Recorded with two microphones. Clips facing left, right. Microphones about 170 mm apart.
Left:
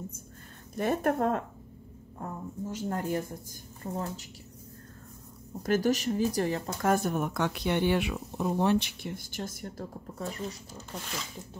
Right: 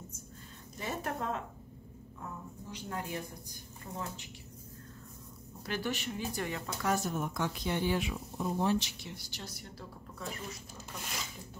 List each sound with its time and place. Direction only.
0.7 s speech: 55° left (ahead or behind)
5.6 s speech: 45° left (ahead or behind)
6.9 s speech: 55° left (ahead or behind); by 10.6 s 40° left (ahead or behind)